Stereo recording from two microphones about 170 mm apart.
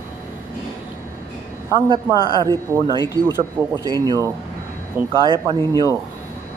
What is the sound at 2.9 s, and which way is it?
Speech, 25° left (ahead or behind).